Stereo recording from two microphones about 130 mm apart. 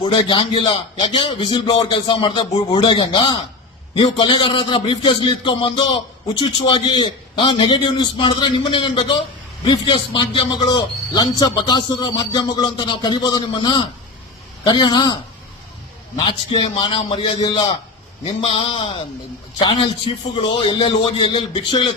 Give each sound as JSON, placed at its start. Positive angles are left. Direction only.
{"t": 0.0, "sound": "a man's voice", "side_deg": 40}
{"t": 18.3, "sound": "a man's voice", "side_deg": 45}